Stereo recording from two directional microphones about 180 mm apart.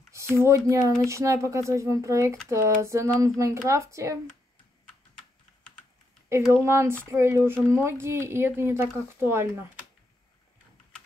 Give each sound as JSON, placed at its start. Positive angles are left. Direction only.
{"t": 0.1, "sound": "speech", "side_deg": -15}
{"t": 6.5, "sound": "speech", "side_deg": -15}